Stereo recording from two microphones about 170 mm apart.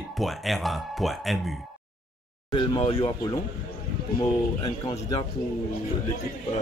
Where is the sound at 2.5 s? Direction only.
30° left (ahead or behind).